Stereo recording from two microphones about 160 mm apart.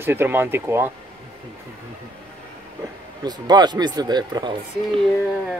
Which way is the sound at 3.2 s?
25° right (ahead or behind).